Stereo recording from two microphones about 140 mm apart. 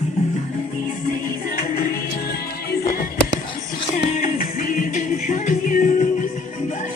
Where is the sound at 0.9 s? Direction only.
90° left.